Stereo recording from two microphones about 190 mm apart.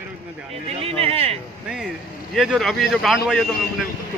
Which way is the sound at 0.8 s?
30° right (ahead or behind).